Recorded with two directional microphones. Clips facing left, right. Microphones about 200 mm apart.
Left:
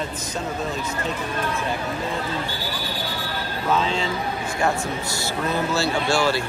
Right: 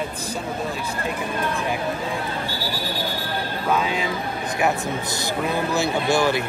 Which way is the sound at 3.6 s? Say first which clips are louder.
Left 1 dB; 10° right (ahead or behind).